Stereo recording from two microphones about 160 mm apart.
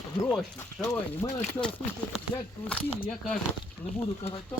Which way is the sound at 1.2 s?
20° left (ahead or behind).